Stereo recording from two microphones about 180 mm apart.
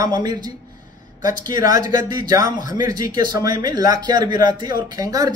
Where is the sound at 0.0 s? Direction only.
25° right (ahead or behind).